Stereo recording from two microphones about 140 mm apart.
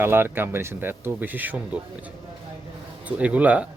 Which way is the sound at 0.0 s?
15° right (ahead or behind).